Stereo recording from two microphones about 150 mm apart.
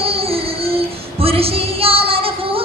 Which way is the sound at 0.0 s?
40° right (ahead or behind).